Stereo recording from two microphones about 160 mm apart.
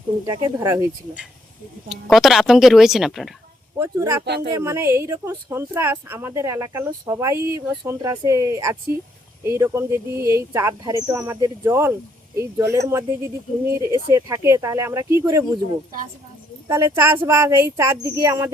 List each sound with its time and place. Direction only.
0.3 s a woman's voice: 15° right (ahead or behind)
1.9 s a woman's voice: centre (ahead or behind)
3.8 s a woman's voice: 15° right (ahead or behind)
4.3 s speech: 90° right
4.5 s a woman's voice: 15° right (ahead or behind)
16.6 s a woman's voice: 15° right (ahead or behind)